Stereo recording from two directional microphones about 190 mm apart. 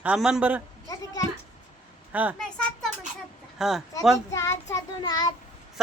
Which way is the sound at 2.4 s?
5° left (ahead or behind).